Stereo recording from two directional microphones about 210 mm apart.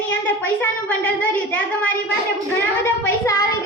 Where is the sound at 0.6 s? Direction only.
10° left (ahead or behind).